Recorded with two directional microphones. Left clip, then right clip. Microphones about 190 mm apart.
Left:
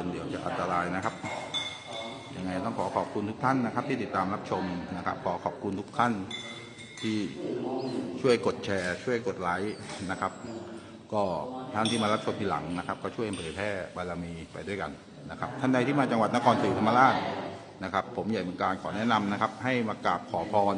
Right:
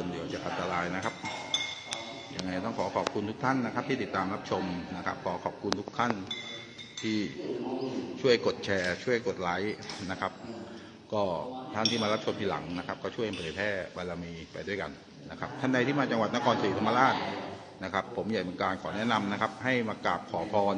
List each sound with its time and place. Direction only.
0.3 s a man's voice: centre (ahead or behind)
2.4 s a man's voice: 5° right (ahead or behind)
15.4 s a man's voice: centre (ahead or behind)